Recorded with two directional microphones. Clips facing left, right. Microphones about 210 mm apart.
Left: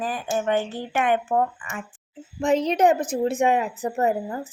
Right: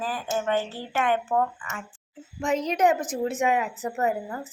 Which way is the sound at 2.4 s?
30° left (ahead or behind).